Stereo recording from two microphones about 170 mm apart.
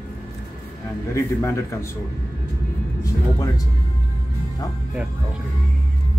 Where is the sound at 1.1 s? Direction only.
15° left (ahead or behind).